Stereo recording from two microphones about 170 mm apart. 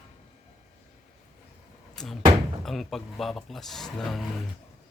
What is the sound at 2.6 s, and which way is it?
Speech, centre (ahead or behind).